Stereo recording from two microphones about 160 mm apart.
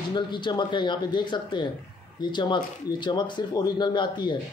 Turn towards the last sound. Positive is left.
turn(degrees=30)  # may be behind; listen again after turning